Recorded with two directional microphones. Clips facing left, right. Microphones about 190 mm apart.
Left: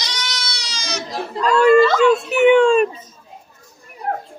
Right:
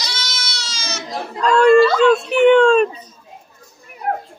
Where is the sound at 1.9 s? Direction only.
10° left (ahead or behind).